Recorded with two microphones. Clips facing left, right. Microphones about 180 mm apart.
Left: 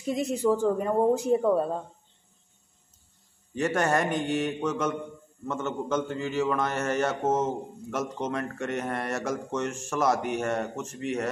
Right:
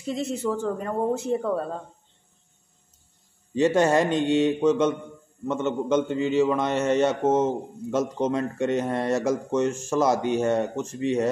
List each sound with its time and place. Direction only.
0.0 s speech: 15° left (ahead or behind)
3.5 s a man's voice: 25° right (ahead or behind)